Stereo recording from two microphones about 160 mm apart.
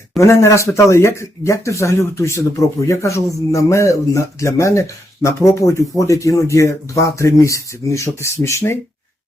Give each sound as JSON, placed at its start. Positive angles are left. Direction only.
{"t": 0.2, "sound": "speech", "side_deg": 20}